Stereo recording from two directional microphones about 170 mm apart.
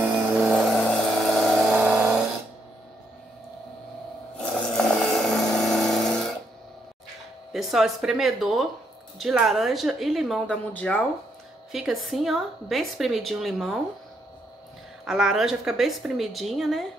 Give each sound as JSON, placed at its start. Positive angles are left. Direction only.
{"t": 0.0, "sound": "vehicle", "side_deg": 0}
{"t": 4.4, "sound": "vehicle", "side_deg": 5}
{"t": 7.5, "sound": "a woman's voice", "side_deg": -5}
{"t": 11.7, "sound": "a woman's voice", "side_deg": 0}
{"t": 15.0, "sound": "a woman's voice", "side_deg": -5}